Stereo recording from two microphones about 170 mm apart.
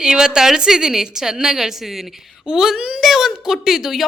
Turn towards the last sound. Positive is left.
turn(degrees=0)  # may be behind; listen again after turning